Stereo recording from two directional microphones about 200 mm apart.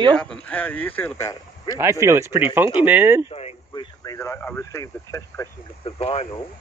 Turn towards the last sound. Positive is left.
turn(degrees=30)  # may be behind; listen again after turning